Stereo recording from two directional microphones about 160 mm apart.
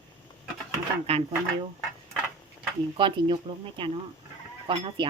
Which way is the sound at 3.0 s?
35° right (ahead or behind).